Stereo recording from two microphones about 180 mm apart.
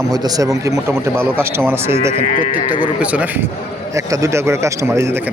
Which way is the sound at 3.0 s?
5° right (ahead or behind).